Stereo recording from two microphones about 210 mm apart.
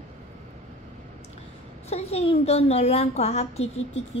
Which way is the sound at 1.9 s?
30° left (ahead or behind).